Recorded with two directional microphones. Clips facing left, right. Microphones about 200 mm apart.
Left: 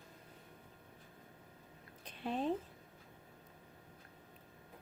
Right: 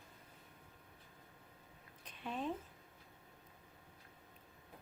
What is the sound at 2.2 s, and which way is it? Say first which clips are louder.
Speech: left 5 dB; 30° left (ahead or behind).